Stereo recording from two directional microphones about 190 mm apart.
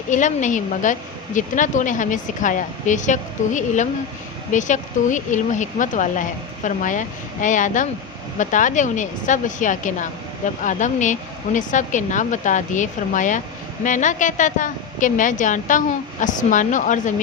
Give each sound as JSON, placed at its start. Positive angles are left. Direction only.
{"t": 0.1, "sound": "speech", "side_deg": 40}